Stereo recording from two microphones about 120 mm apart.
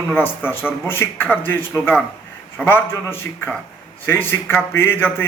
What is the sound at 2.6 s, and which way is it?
A man's voice, 20° left (ahead or behind).